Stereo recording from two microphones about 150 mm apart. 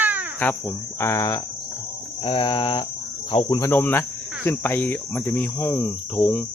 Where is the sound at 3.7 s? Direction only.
15° left (ahead or behind).